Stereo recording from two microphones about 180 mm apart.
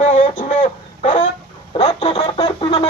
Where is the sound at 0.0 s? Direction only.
45° left (ahead or behind).